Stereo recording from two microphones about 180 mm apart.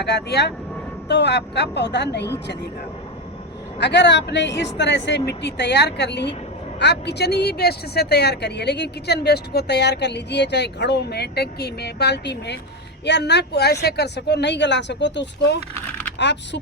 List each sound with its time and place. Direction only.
0.0 s a woman's voice: 65° left (ahead or behind)
3.8 s a woman's voice: 70° left (ahead or behind)
15.7 s vehicle: 10° left (ahead or behind)
16.1 s a woman's voice: 75° left (ahead or behind)